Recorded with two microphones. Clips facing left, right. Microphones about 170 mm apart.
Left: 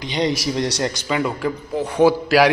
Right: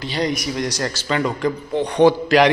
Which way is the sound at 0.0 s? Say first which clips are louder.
Left 1 dB; 20° left (ahead or behind).